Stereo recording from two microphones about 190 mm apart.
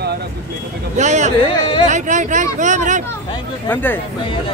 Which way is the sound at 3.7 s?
10° left (ahead or behind).